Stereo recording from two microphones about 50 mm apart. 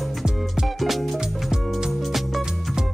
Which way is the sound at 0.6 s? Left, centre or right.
Centre.